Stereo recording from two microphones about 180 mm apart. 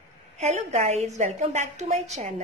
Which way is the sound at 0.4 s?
40° right (ahead or behind).